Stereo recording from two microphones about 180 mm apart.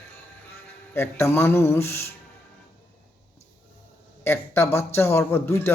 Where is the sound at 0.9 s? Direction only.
15° left (ahead or behind).